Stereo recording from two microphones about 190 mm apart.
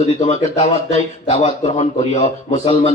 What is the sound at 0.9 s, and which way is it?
A man's voice, 35° left (ahead or behind).